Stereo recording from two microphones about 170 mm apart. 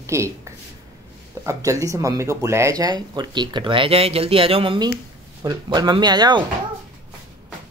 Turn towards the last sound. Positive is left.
turn(degrees=-25)  # may be behind; listen again after turning